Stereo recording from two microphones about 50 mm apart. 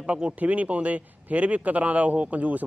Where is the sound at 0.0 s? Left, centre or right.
Right.